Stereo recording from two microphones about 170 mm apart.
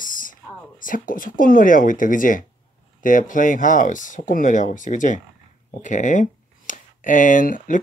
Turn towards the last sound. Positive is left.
turn(degrees=50)  # may be behind; listen again after turning